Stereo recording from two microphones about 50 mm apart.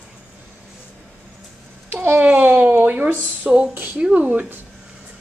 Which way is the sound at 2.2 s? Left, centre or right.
Right.